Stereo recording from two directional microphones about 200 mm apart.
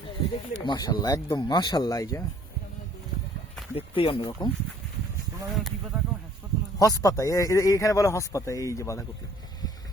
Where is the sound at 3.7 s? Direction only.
25° left (ahead or behind).